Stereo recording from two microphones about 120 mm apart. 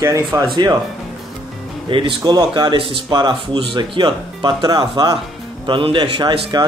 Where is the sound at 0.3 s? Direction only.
25° right (ahead or behind).